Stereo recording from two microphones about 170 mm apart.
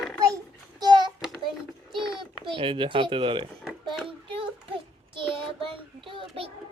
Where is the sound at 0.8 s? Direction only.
25° right (ahead or behind).